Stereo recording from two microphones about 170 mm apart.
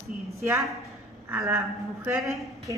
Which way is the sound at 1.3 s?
10° right (ahead or behind).